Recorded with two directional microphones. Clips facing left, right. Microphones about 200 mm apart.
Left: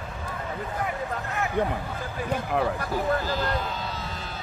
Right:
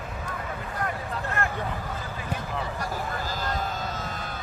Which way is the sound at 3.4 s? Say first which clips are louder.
Left 2 dB; 45° right (ahead or behind).